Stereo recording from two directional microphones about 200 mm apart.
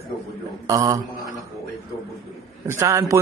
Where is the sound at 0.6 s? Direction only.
15° right (ahead or behind).